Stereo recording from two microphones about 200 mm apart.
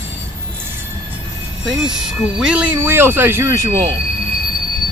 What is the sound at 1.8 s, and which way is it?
Speech, 5° right (ahead or behind).